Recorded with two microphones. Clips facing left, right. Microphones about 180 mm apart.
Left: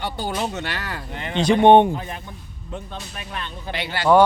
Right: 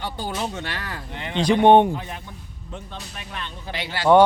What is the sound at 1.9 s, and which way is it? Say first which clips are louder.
Speech: left 2 dB; 50° left (ahead or behind).